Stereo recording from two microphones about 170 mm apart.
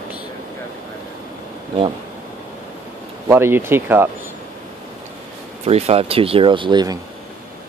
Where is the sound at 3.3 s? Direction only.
15° right (ahead or behind).